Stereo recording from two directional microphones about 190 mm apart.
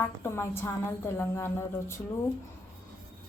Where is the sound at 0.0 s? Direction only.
15° left (ahead or behind).